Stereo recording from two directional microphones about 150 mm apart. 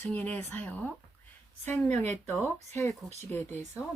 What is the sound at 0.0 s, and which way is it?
Speech, 10° left (ahead or behind).